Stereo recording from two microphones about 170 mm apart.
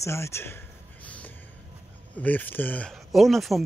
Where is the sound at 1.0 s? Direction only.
10° left (ahead or behind).